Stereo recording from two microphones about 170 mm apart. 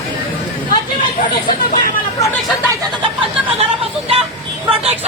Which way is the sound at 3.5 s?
35° right (ahead or behind).